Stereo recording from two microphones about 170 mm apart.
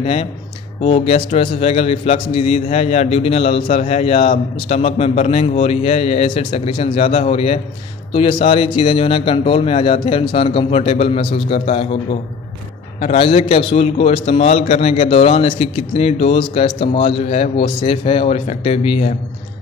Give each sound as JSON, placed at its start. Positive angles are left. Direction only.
{"t": 0.0, "sound": "a man's voice", "side_deg": 35}